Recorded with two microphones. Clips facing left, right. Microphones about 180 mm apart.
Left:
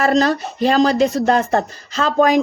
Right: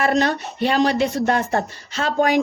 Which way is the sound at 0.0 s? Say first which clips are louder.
Left 3 dB; 35° left (ahead or behind).